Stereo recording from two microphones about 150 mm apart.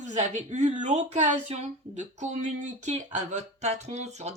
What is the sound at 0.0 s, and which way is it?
Speech, 50° right (ahead or behind).